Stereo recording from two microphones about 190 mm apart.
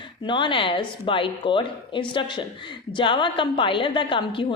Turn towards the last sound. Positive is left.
turn(degrees=25)  # may be behind; listen again after turning